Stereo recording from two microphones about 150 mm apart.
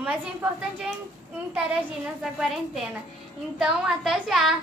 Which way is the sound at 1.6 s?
5° right (ahead or behind).